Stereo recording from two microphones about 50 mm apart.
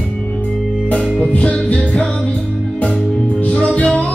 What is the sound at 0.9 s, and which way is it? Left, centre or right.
Music, left.